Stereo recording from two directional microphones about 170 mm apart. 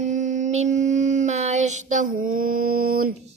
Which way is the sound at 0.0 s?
45° right (ahead or behind).